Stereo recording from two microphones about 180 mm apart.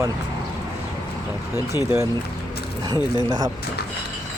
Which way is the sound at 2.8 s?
20° right (ahead or behind).